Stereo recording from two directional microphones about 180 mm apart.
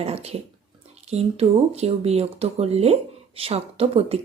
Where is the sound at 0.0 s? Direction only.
35° right (ahead or behind).